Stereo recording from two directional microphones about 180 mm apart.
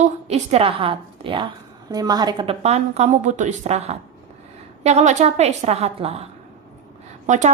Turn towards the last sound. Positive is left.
turn(degrees=-40)  # may be behind; listen again after turning